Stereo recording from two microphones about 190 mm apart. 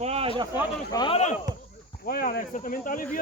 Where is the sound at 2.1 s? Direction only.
50° left (ahead or behind).